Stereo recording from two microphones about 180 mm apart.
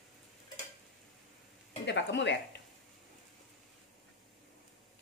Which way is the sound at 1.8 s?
80° left.